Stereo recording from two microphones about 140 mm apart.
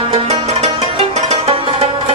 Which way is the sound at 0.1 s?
45° right (ahead or behind).